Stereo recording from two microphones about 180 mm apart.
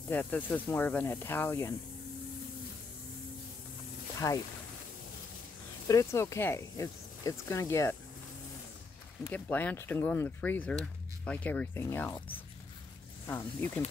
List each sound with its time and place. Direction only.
0.1 s speech: 10° left (ahead or behind)
4.2 s speech: 15° left (ahead or behind)
5.9 s speech: 15° left (ahead or behind)
9.3 s speech: 10° left (ahead or behind)